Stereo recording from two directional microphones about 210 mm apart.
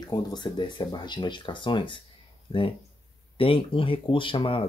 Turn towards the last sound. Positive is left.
turn(degrees=25)  # may be behind; listen again after turning